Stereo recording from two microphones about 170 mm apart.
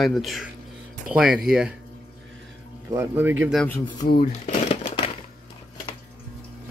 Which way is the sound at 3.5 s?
10° left (ahead or behind).